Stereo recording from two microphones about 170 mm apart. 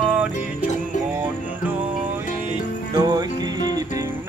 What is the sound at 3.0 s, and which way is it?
Music, 25° right (ahead or behind).